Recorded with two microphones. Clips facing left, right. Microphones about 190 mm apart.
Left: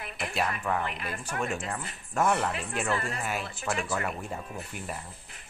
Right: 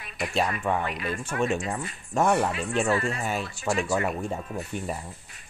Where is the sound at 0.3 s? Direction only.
25° right (ahead or behind).